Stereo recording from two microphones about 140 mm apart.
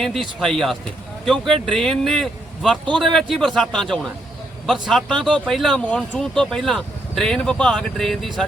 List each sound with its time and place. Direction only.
0.0 s speech: centre (ahead or behind)